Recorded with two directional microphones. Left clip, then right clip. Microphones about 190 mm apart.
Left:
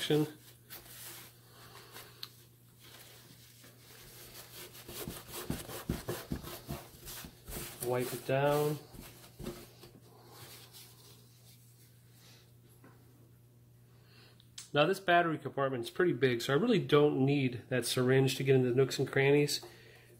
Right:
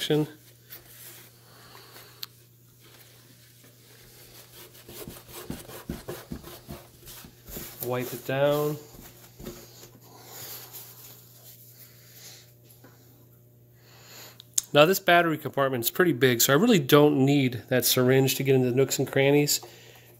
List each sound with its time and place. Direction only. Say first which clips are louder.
1.7 s a sound: right 3 dB; 65° right (ahead or behind)
4.9 s rub: right 2 dB; centre (ahead or behind)
7.9 s speech: right 3 dB; 40° right (ahead or behind)
14.1 s speech: right 19 dB; 75° right (ahead or behind); by 19.6 s 45° right (ahead or behind)